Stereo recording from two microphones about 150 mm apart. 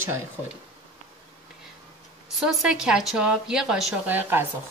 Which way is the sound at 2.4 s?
5° right (ahead or behind).